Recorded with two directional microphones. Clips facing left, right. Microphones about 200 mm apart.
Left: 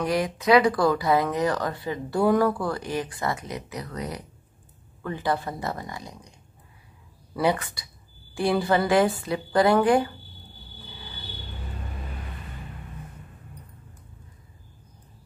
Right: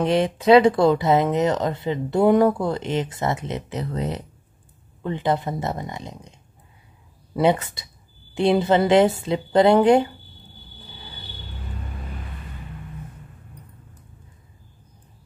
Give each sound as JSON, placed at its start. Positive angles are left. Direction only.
{"t": 0.0, "sound": "speech", "side_deg": -25}
{"t": 7.3, "sound": "speech", "side_deg": -25}